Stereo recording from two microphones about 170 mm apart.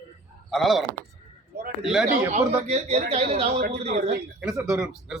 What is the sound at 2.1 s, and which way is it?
Speech, 45° right (ahead or behind).